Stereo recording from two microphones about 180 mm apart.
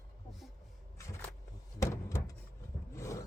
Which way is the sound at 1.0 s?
15° left (ahead or behind).